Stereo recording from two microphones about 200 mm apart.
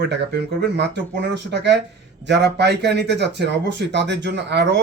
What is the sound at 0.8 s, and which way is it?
Speech, 60° right (ahead or behind).